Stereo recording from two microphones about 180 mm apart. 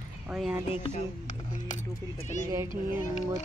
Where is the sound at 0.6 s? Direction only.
35° left (ahead or behind).